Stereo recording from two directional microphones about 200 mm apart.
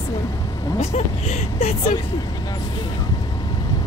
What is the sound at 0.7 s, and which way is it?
Speech, 30° left (ahead or behind).